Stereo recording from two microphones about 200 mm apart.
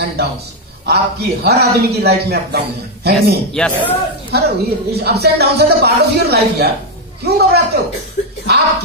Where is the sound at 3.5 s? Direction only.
5° left (ahead or behind).